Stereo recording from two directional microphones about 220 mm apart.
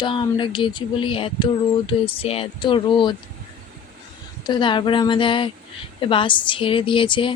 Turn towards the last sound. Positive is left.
turn(degrees=25)  # may be behind; listen again after turning